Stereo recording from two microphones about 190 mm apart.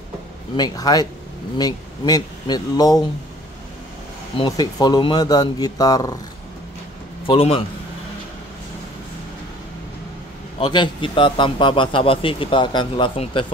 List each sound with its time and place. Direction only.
0.6 s a man's voice: 20° left (ahead or behind)
4.4 s a man's voice: 20° left (ahead or behind)
7.2 s a man's voice: 30° left (ahead or behind)
10.6 s a man's voice: 25° left (ahead or behind)